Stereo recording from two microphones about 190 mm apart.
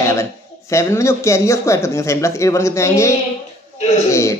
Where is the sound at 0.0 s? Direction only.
15° left (ahead or behind).